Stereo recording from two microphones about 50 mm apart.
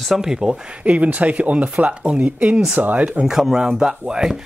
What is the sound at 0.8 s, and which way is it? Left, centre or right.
Speech, right.